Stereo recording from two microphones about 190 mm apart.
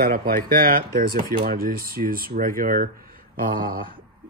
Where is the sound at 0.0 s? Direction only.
50° right (ahead or behind).